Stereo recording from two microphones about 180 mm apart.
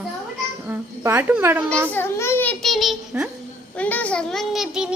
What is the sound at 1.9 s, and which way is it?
A child's voice, 10° left (ahead or behind).